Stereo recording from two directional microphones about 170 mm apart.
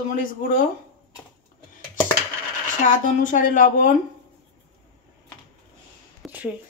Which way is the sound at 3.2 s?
50° left (ahead or behind).